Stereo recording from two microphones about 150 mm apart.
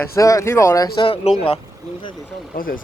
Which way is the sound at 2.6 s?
70° left (ahead or behind).